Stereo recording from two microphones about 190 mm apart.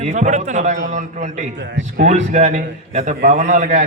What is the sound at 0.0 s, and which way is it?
A man's voice, 40° right (ahead or behind).